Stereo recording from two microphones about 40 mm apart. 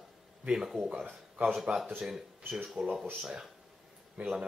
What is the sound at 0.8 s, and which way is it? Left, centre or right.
Speech, right.